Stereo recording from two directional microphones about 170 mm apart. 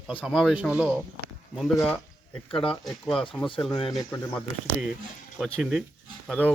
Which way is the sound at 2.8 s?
Centre (ahead or behind).